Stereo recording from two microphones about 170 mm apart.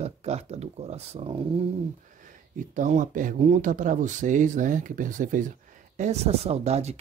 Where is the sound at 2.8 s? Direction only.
50° right (ahead or behind).